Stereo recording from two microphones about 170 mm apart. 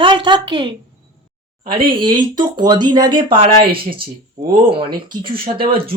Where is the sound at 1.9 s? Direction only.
30° right (ahead or behind).